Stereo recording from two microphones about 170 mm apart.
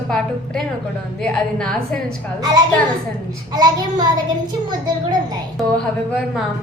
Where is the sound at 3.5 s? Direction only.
25° right (ahead or behind).